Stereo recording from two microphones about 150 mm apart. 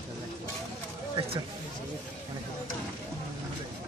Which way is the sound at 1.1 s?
40° right (ahead or behind).